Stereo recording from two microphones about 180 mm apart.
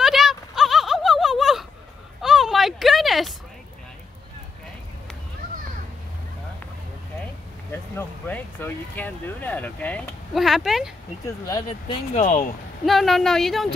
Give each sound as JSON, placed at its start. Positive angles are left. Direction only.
{"t": 0.0, "sound": "a sound", "side_deg": 0}
{"t": 7.7, "sound": "speech", "side_deg": 10}
{"t": 11.2, "sound": "speech", "side_deg": 20}
{"t": 12.1, "sound": "speech", "side_deg": 45}
{"t": 12.8, "sound": "speech", "side_deg": 0}